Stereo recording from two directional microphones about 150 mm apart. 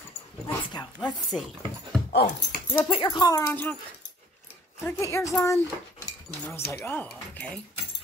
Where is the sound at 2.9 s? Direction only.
35° left (ahead or behind); by 3.7 s 15° left (ahead or behind).